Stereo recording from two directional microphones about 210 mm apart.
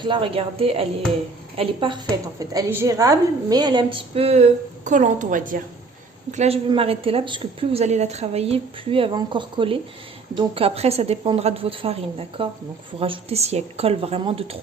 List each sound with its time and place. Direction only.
0.0 s a woman's voice: 25° right (ahead or behind)